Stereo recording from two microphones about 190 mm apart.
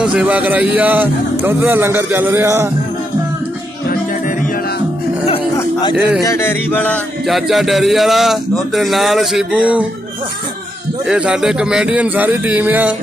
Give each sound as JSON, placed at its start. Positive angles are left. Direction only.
{"t": 0.0, "sound": "speech", "side_deg": -5}
{"t": 5.6, "sound": "a sound", "side_deg": 20}
{"t": 6.2, "sound": "music", "side_deg": 15}
{"t": 11.1, "sound": "speech", "side_deg": -5}